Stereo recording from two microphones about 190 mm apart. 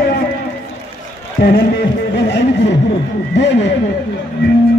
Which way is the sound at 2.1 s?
70° left (ahead or behind).